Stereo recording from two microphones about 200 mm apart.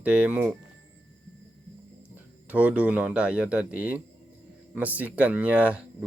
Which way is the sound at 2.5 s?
5° right (ahead or behind).